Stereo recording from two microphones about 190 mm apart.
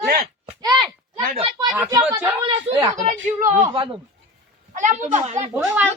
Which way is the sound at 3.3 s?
45° right (ahead or behind).